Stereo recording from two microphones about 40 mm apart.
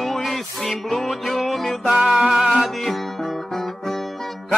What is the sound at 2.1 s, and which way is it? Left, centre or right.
Music, centre.